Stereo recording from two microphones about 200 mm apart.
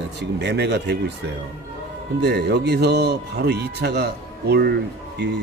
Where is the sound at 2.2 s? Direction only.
55° right (ahead or behind).